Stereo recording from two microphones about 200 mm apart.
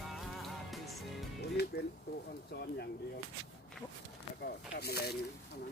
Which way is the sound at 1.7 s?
55° left (ahead or behind).